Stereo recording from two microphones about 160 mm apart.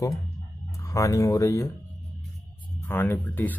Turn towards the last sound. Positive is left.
turn(degrees=10)  # may be behind; listen again after turning